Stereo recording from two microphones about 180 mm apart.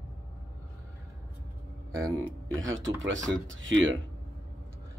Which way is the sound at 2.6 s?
90° right.